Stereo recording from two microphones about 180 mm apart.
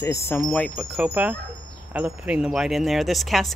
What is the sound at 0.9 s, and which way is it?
Speech, 10° right (ahead or behind).